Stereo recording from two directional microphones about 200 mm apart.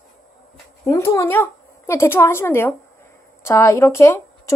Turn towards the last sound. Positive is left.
turn(degrees=15)  # may be behind; listen again after turning